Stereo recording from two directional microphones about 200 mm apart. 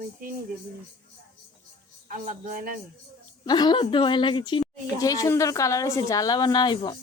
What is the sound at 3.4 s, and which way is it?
A woman's voice, 20° left (ahead or behind).